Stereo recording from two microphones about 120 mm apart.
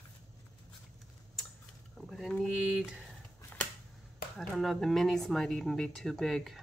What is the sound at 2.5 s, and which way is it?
Speech, 10° right (ahead or behind).